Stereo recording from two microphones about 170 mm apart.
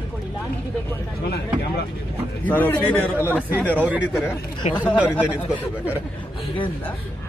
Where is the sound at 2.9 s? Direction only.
5° left (ahead or behind).